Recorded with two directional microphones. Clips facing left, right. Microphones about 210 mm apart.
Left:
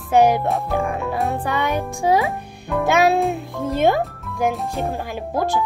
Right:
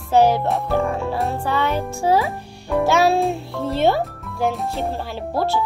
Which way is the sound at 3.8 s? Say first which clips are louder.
Left 1 dB; 15° left (ahead or behind).